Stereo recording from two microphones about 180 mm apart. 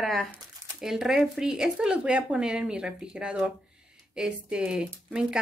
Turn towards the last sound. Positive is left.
turn(degrees=-5)  # may be behind; listen again after turning